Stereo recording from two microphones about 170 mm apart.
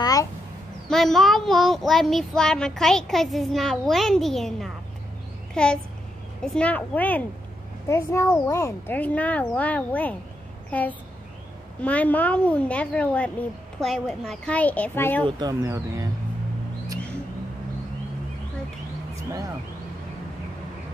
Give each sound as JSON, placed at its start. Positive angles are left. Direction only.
{"t": 0.0, "sound": "a sound", "side_deg": 20}
{"t": 0.8, "sound": "a child's voice", "side_deg": 0}
{"t": 15.2, "sound": "speech", "side_deg": -25}